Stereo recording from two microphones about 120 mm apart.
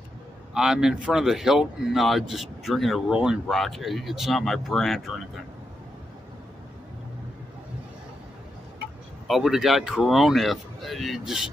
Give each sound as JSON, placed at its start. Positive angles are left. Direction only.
{"t": 0.6, "sound": "speech", "side_deg": -5}
{"t": 9.3, "sound": "speech", "side_deg": -5}